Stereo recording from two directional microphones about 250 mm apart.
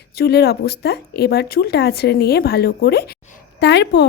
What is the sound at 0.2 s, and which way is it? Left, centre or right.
A woman's voice, left.